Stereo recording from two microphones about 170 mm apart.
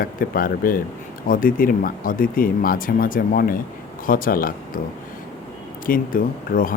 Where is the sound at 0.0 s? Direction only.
55° left (ahead or behind).